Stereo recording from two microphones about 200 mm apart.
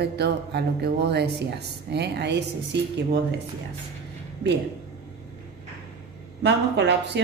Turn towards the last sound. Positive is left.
turn(degrees=-60)  # may be behind; listen again after turning